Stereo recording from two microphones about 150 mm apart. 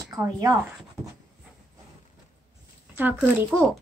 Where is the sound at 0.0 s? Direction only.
25° right (ahead or behind).